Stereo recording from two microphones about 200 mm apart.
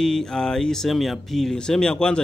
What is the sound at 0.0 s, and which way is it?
Speech, 5° left (ahead or behind).